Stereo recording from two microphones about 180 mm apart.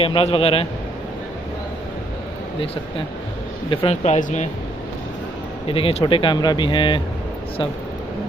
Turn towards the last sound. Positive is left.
turn(degrees=25)  # may be behind; listen again after turning